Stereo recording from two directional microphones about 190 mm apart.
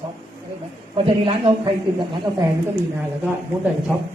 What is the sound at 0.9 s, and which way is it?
Speech, 30° right (ahead or behind).